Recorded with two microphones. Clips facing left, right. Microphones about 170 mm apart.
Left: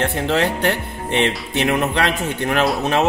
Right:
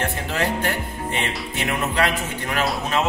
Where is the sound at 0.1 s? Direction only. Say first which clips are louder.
Left 5 dB; 70° left (ahead or behind).